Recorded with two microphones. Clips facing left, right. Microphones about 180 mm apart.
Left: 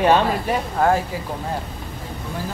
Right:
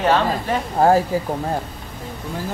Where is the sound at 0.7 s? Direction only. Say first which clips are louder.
Right 4 dB; 35° right (ahead or behind).